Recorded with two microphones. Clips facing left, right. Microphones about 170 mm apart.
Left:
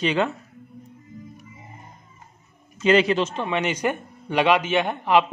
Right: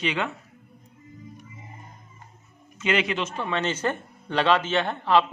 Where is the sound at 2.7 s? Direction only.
35° left (ahead or behind).